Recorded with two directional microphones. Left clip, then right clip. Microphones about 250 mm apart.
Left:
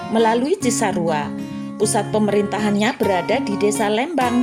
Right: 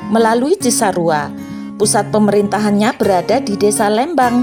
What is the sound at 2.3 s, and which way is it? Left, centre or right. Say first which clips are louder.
A woman's voice: right 5 dB; right.